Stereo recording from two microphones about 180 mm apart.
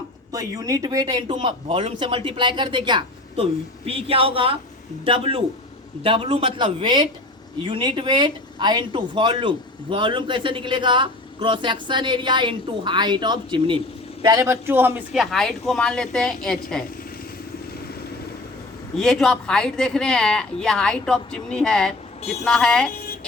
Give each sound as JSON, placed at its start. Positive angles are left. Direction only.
{"t": 0.3, "sound": "speech", "side_deg": -20}
{"t": 18.9, "sound": "speech", "side_deg": 0}